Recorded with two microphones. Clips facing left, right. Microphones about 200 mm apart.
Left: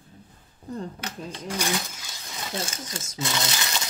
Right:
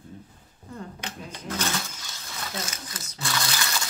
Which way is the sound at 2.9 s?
20° left (ahead or behind).